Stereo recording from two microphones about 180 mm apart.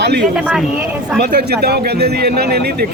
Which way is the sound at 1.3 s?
65° right (ahead or behind).